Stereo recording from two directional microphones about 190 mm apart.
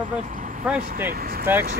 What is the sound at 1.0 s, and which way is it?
Speech, 50° right (ahead or behind).